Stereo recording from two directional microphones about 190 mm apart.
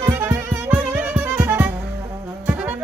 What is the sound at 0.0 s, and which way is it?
Music, 15° right (ahead or behind).